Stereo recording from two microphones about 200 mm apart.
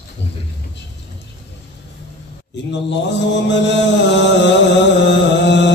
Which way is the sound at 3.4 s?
60° left (ahead or behind).